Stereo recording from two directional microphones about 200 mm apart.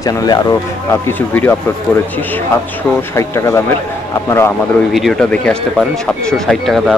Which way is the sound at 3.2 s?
15° left (ahead or behind).